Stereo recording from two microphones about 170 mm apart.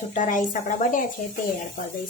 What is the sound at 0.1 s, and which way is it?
Speech, 50° left (ahead or behind).